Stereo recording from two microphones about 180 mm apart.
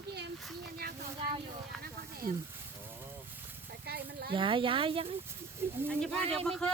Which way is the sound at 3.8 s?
60° right (ahead or behind).